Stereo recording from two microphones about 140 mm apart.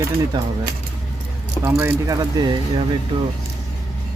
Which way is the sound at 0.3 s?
30° right (ahead or behind).